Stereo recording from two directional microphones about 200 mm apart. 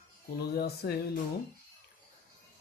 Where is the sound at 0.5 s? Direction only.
50° left (ahead or behind).